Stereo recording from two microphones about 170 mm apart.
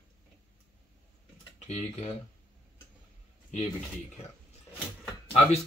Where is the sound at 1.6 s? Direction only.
40° left (ahead or behind).